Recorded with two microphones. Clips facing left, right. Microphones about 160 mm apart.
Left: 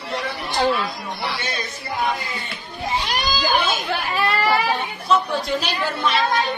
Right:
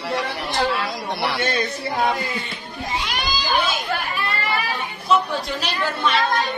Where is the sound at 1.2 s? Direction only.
65° right (ahead or behind).